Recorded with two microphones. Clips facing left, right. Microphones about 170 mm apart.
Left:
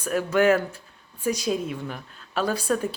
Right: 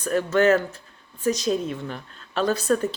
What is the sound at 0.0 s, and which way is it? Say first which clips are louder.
A woman's voice: right 1 dB; 10° left (ahead or behind).